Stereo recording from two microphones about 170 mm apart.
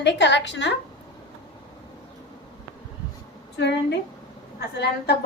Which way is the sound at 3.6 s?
90° left.